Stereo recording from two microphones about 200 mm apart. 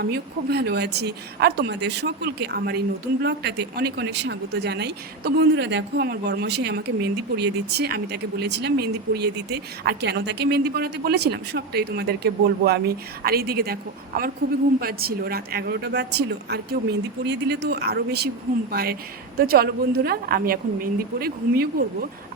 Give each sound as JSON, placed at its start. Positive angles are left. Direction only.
{"t": 0.0, "sound": "a woman's voice", "side_deg": -55}